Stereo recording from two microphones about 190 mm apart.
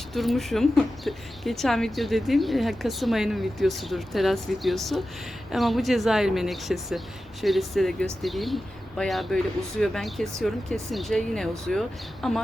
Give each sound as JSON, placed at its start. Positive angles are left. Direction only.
{"t": 0.1, "sound": "speech", "side_deg": 0}